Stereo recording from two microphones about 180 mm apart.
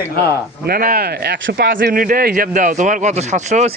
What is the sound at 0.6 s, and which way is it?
Speech, 55° right (ahead or behind).